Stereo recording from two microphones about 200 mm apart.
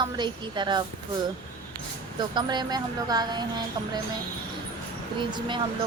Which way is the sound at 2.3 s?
20° right (ahead or behind).